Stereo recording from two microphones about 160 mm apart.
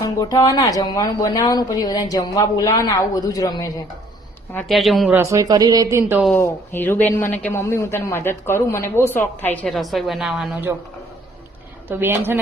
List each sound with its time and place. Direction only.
0.0 s a woman's voice: 25° left (ahead or behind)
4.7 s speech: centre (ahead or behind)
5.1 s speech: 20° right (ahead or behind)
6.3 s a man's voice: 10° left (ahead or behind); by 10.7 s 5° right (ahead or behind)
11.9 s speech: 15° right (ahead or behind)